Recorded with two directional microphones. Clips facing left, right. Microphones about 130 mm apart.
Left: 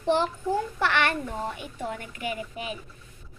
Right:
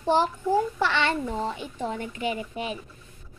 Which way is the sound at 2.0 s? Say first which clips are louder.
Right 3 dB; 30° right (ahead or behind).